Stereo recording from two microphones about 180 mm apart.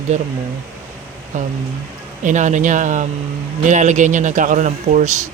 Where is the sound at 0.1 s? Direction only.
40° right (ahead or behind).